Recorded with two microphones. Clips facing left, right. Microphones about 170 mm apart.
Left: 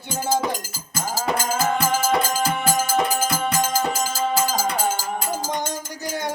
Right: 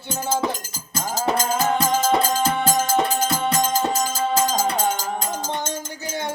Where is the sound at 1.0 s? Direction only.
20° right (ahead or behind).